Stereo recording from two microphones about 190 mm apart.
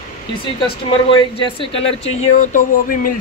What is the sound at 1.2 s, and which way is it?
Speech, 30° left (ahead or behind).